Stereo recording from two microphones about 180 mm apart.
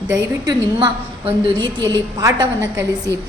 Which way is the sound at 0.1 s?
20° right (ahead or behind).